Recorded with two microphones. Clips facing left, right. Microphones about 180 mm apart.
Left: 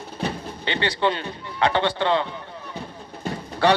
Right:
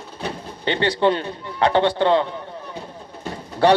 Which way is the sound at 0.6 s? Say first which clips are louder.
Right 5 dB; 45° right (ahead or behind).